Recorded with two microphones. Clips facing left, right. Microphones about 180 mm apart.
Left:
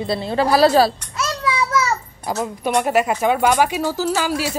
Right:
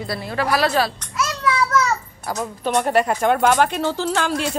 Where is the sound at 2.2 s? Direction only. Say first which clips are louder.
Left 3 dB; 20° left (ahead or behind).